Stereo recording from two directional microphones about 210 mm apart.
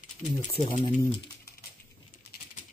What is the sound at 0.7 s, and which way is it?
Speech, 30° left (ahead or behind).